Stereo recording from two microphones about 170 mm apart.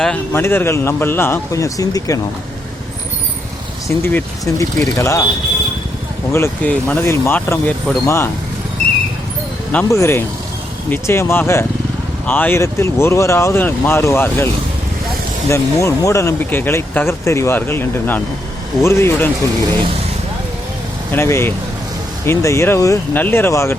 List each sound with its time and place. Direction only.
0.0 s speech: 10° left (ahead or behind)
3.8 s speech: 15° left (ahead or behind)
6.3 s speech: 10° left (ahead or behind)
9.7 s speech: 15° left (ahead or behind)
21.1 s speech: 15° left (ahead or behind)